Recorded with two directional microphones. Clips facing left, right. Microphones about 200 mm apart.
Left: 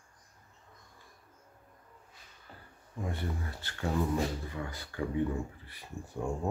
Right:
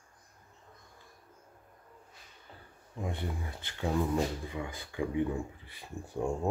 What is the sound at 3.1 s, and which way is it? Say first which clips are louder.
Speech: even; 15° right (ahead or behind).